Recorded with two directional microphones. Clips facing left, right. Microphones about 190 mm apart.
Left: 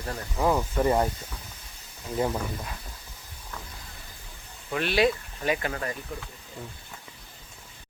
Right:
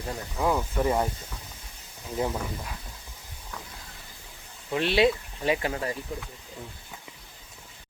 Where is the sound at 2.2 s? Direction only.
Centre (ahead or behind).